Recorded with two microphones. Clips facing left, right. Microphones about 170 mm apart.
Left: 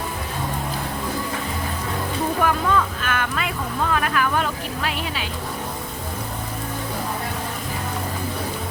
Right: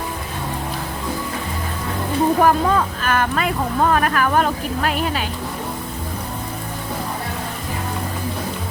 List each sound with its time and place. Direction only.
2.4 s speech: 40° right (ahead or behind)